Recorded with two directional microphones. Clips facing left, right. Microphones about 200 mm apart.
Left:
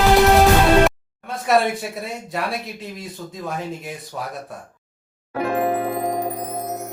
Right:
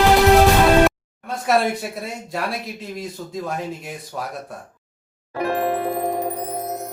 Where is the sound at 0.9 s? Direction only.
Centre (ahead or behind).